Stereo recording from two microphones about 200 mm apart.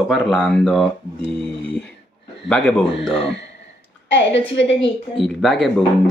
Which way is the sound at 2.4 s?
5° left (ahead or behind).